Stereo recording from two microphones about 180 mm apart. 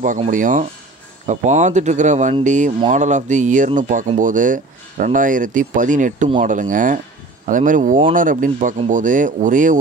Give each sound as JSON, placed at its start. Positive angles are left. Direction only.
{"t": 0.0, "sound": "speech", "side_deg": -45}